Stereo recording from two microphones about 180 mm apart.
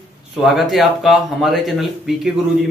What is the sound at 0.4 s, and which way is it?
Speech, centre (ahead or behind).